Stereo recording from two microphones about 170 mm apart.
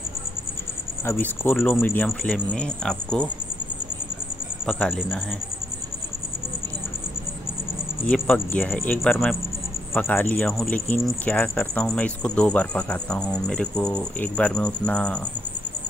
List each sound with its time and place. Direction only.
1.0 s speech: 10° left (ahead or behind)
4.6 s speech: 5° left (ahead or behind)
8.1 s speech: 5° left (ahead or behind)